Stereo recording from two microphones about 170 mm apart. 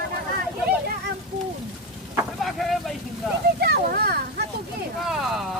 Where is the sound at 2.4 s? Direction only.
Centre (ahead or behind).